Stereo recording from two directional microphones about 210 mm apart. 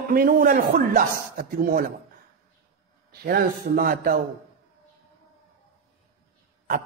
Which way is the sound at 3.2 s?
45° right (ahead or behind).